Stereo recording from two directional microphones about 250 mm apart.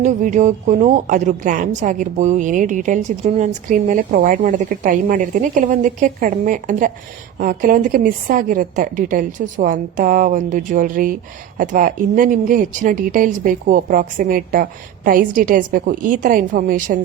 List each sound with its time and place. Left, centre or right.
0.0 s a woman's voice: right